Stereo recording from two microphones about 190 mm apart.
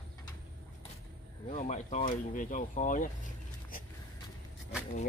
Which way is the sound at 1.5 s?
35° left (ahead or behind).